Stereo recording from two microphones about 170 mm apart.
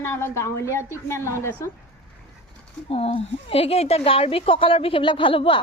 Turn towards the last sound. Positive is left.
turn(degrees=30)  # may be behind; listen again after turning